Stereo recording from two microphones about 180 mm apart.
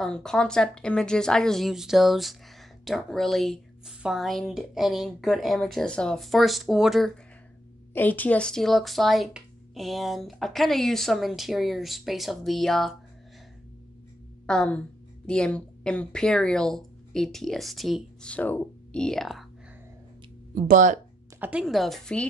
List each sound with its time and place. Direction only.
0.0 s speech: 5° left (ahead or behind)
7.9 s speech: 10° left (ahead or behind)
14.4 s a woman's voice: 5° left (ahead or behind)
20.5 s speech: 45° right (ahead or behind)
21.4 s speech: 5° right (ahead or behind)